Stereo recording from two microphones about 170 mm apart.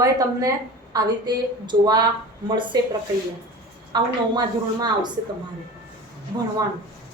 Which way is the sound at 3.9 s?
25° right (ahead or behind).